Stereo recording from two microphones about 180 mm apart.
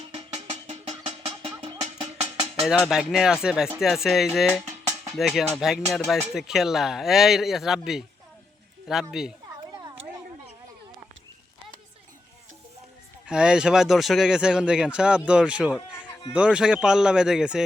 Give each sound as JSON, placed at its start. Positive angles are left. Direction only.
{"t": 0.1, "sound": "music", "side_deg": -35}
{"t": 2.6, "sound": "speech", "side_deg": 0}
{"t": 4.6, "sound": "music", "side_deg": -40}
{"t": 5.1, "sound": "speech", "side_deg": 0}
{"t": 13.2, "sound": "speech", "side_deg": -5}